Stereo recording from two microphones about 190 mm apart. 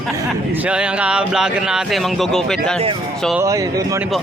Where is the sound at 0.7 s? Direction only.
5° right (ahead or behind).